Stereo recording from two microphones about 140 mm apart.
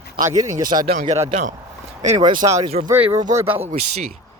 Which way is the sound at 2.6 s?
50° right (ahead or behind).